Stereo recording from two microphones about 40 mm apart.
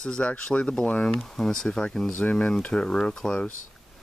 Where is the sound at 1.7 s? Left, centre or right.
Left.